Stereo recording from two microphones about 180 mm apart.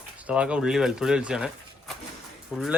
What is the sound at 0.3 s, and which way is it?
Speech, 5° right (ahead or behind).